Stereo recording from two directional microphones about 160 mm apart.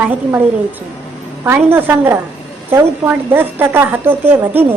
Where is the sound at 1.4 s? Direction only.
15° right (ahead or behind).